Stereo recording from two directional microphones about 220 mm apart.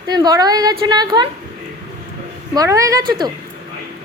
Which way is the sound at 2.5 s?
15° right (ahead or behind).